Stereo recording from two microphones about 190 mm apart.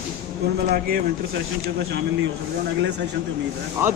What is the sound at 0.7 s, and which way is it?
Speech, 50° right (ahead or behind).